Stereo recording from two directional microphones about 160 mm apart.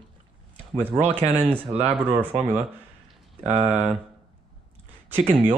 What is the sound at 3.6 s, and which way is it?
Speech, 5° right (ahead or behind).